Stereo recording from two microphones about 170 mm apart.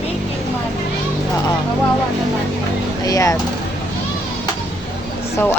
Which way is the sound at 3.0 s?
20° left (ahead or behind).